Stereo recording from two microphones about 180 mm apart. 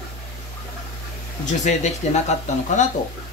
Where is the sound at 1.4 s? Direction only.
40° left (ahead or behind).